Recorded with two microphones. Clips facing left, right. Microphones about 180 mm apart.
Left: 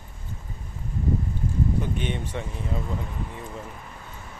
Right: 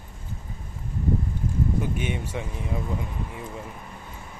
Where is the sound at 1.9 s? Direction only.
10° right (ahead or behind).